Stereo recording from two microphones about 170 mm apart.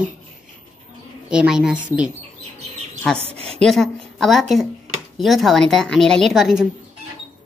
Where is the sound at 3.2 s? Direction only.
35° right (ahead or behind).